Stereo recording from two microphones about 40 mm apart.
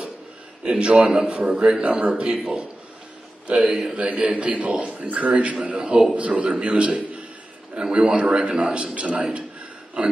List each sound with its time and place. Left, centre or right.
0.7 s a man's voice: right
2.3 s speech: centre
3.8 s a man's voice: right